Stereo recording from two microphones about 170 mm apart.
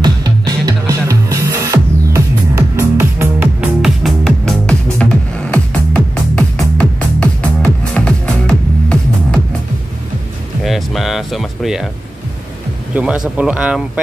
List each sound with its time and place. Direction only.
0.0 s music: 25° right (ahead or behind); by 9.4 s 5° left (ahead or behind)
10.6 s music: centre (ahead or behind)
12.9 s speech: 5° right (ahead or behind)